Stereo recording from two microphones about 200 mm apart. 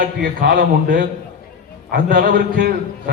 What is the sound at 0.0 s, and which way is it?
A man's voice, 45° right (ahead or behind).